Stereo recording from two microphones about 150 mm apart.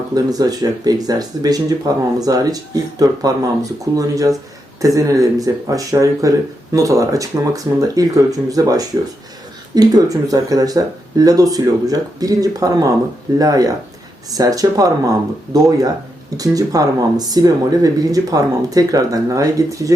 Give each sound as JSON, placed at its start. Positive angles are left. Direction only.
{"t": 0.1, "sound": "speech", "side_deg": -25}